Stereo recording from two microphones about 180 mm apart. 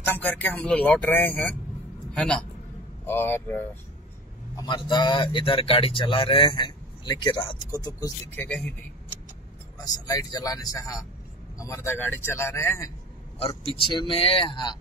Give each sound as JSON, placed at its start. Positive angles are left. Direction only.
{"t": 0.0, "sound": "a man's voice", "side_deg": 10}
{"t": 4.6, "sound": "speech", "side_deg": 25}
{"t": 10.0, "sound": "speech", "side_deg": 20}
{"t": 13.5, "sound": "speech", "side_deg": 30}